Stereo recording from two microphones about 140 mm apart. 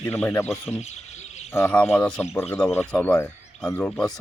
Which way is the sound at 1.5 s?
15° left (ahead or behind).